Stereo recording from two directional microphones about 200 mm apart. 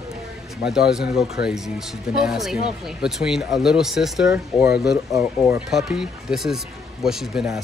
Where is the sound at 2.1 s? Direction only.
Centre (ahead or behind).